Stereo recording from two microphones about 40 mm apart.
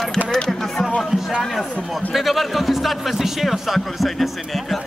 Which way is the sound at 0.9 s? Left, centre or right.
Centre.